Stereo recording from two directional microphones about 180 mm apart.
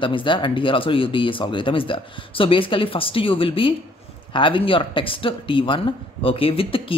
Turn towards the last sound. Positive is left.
turn(degrees=30)  # may be behind; listen again after turning